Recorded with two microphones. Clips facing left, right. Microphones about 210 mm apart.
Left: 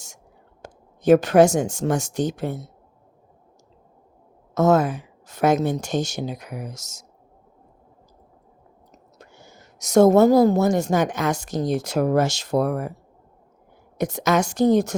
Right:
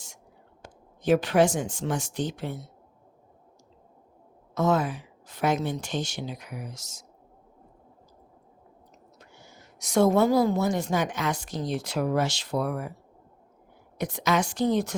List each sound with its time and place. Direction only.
0.6 s speech: 45° left (ahead or behind)
4.5 s a woman's voice: 45° left (ahead or behind)
9.1 s a woman's voice: 45° left (ahead or behind)
14.0 s a woman's voice: 45° left (ahead or behind)